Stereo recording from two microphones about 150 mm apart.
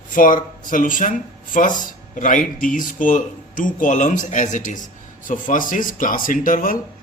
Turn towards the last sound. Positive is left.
turn(degrees=65)  # may be behind; listen again after turning